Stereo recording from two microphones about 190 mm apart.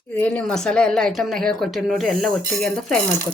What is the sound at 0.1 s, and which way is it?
Speech, 10° left (ahead or behind).